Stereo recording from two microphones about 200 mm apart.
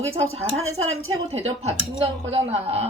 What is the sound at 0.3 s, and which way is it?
A man's voice, 30° right (ahead or behind).